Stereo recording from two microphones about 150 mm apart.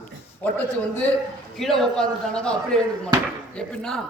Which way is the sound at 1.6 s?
5° left (ahead or behind).